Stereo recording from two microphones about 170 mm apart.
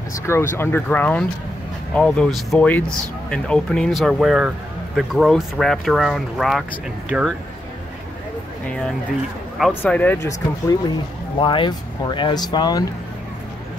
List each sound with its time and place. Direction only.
0.1 s a man's voice: 15° left (ahead or behind); by 7.3 s 5° right (ahead or behind)
9.6 s a man's voice: centre (ahead or behind)
9.9 s speech: 15° left (ahead or behind)
11.3 s speech: 30° left (ahead or behind)